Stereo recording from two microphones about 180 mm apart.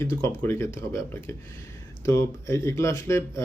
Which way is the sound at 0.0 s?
15° left (ahead or behind).